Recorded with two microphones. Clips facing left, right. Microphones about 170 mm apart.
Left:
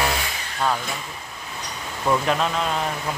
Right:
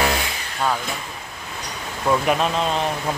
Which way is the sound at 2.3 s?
20° right (ahead or behind).